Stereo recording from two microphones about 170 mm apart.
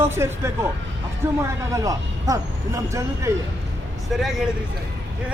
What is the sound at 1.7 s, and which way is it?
Speech, 20° right (ahead or behind).